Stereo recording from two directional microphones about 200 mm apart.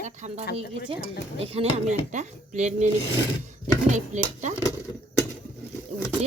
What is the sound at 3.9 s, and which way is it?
Speech, 35° right (ahead or behind).